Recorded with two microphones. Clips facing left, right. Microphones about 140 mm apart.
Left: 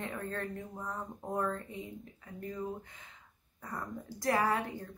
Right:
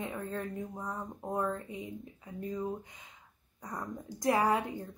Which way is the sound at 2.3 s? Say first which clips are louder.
Right 3 dB; 25° right (ahead or behind).